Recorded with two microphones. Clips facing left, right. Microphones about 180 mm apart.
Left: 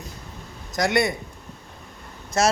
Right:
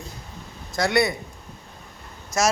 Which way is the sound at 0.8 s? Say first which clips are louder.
Even; 20° left (ahead or behind).